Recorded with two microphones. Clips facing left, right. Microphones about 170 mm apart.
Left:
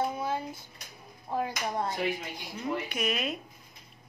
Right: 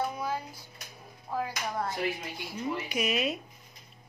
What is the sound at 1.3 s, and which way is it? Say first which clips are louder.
Speech: left 2 dB; 25° left (ahead or behind).